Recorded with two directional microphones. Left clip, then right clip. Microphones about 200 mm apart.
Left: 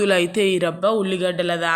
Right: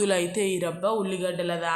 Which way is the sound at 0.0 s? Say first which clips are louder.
Left 7 dB; 15° left (ahead or behind).